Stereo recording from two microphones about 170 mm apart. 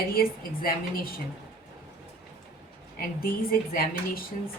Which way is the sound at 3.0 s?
60° left (ahead or behind).